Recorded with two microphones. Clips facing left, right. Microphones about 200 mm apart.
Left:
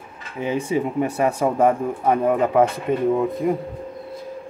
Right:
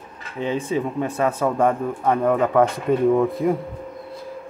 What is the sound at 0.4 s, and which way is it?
Speech, 10° left (ahead or behind).